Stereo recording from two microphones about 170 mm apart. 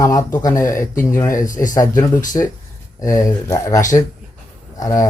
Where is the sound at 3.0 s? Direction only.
20° left (ahead or behind).